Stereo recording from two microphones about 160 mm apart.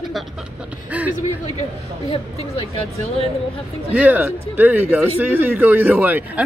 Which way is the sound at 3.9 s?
10° right (ahead or behind).